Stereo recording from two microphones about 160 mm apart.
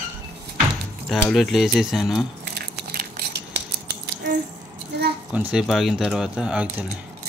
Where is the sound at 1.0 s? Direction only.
Centre (ahead or behind).